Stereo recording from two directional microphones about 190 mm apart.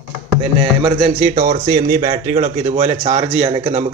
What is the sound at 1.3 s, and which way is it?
A man's voice, 50° right (ahead or behind).